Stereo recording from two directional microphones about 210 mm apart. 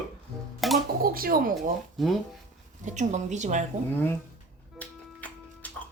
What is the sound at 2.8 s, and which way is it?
Speech, 35° right (ahead or behind).